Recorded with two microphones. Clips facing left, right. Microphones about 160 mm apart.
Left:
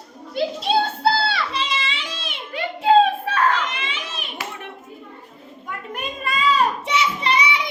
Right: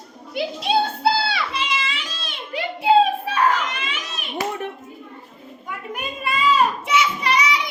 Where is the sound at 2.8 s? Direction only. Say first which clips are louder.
Left 1 dB; 15° right (ahead or behind).